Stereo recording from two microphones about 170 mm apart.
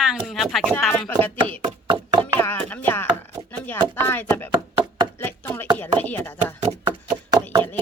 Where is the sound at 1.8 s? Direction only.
30° right (ahead or behind).